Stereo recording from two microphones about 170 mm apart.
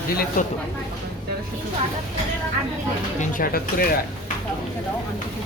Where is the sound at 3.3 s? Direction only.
60° left (ahead or behind).